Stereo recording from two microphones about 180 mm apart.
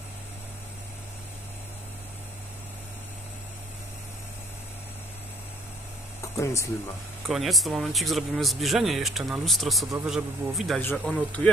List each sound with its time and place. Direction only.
6.2 s a sound: 15° left (ahead or behind)
7.2 s speech: centre (ahead or behind)
10.8 s speech: 10° left (ahead or behind)